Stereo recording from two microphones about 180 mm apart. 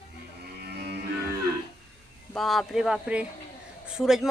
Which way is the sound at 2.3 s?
Centre (ahead or behind).